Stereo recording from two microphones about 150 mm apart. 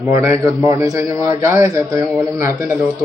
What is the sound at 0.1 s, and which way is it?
A man's voice, 20° right (ahead or behind).